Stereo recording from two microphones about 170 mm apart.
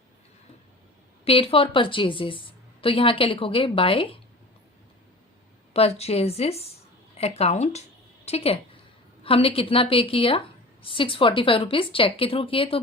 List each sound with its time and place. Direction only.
1.2 s speech: 35° left (ahead or behind)
5.7 s speech: 35° left (ahead or behind)